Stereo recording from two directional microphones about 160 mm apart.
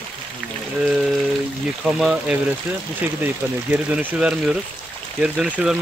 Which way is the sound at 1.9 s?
5° right (ahead or behind).